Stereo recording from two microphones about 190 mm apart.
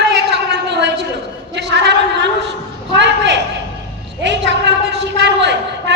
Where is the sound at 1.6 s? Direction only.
65° right (ahead or behind).